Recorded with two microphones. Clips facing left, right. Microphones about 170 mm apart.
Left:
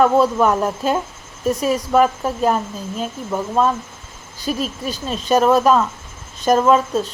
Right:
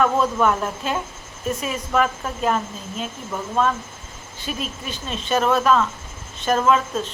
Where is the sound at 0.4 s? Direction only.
35° left (ahead or behind).